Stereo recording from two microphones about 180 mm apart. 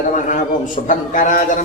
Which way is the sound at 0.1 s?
45° left (ahead or behind).